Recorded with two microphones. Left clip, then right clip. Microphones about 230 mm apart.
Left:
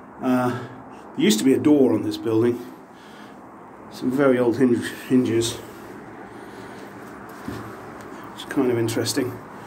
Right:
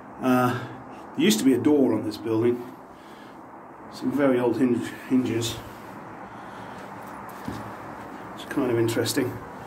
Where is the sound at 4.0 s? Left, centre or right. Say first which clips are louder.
Left 4 dB; left.